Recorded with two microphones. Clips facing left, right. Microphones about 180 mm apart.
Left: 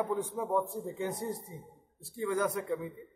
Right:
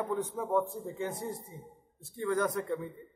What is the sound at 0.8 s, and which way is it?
A man's voice, 15° left (ahead or behind).